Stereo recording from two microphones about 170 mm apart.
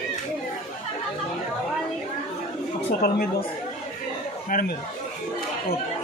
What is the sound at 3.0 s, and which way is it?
Speech, 60° left (ahead or behind).